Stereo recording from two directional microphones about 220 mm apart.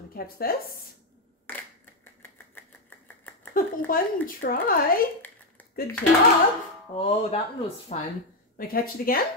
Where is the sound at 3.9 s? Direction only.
40° left (ahead or behind).